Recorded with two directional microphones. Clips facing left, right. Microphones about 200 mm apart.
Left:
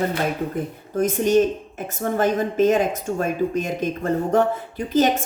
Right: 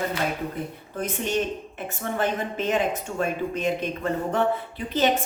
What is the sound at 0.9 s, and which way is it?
A woman's voice, 45° left (ahead or behind).